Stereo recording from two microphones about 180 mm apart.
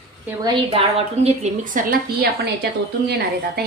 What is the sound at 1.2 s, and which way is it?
A woman's voice, 45° right (ahead or behind).